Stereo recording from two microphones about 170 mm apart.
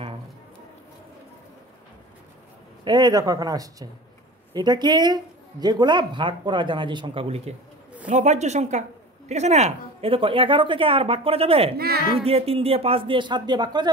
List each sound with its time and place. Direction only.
2.8 s speech: 25° right (ahead or behind)